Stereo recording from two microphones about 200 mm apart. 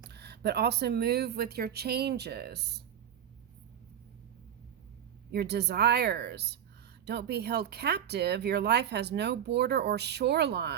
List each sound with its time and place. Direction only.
0.1 s speech: 55° right (ahead or behind)
5.3 s speech: 55° right (ahead or behind)